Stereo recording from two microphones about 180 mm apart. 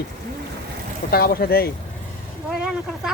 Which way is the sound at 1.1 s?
60° left (ahead or behind).